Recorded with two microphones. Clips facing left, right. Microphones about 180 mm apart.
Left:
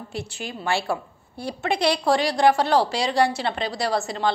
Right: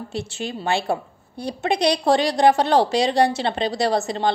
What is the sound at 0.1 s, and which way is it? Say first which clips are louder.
A woman's voice: right 3 dB; 25° right (ahead or behind).